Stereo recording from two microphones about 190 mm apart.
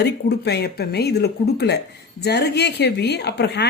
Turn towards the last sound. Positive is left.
turn(degrees=60)  # may be behind; listen again after turning